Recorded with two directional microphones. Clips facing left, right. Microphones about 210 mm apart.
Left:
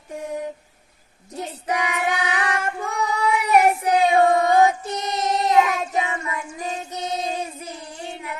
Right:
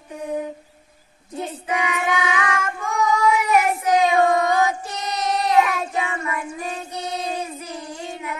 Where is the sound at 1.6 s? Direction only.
40° left (ahead or behind).